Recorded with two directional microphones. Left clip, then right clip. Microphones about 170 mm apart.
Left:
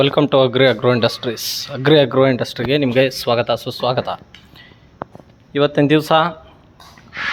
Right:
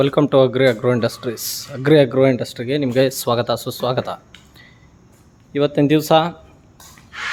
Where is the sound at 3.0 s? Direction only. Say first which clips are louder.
Left 2 dB; 25° right (ahead or behind).